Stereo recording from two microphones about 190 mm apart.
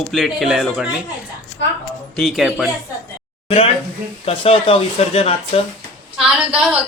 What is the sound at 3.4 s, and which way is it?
Speech, 30° left (ahead or behind).